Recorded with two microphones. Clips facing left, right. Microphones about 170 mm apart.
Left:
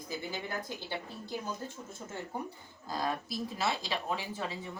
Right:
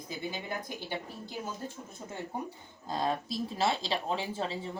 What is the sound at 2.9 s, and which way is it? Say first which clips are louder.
Speech: right 3 dB; 25° right (ahead or behind).